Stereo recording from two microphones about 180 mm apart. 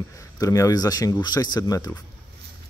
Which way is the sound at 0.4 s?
20° left (ahead or behind).